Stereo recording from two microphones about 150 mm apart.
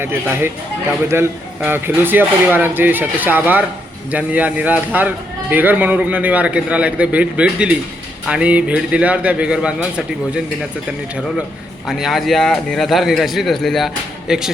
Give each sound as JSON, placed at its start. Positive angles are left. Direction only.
{"t": 0.0, "sound": "speech", "side_deg": -15}
{"t": 11.9, "sound": "speech", "side_deg": 0}